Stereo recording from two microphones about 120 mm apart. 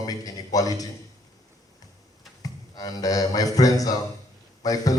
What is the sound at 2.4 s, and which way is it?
A man's voice, 30° left (ahead or behind).